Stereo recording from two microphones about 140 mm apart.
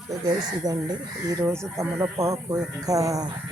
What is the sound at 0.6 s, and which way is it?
Speech, 25° right (ahead or behind).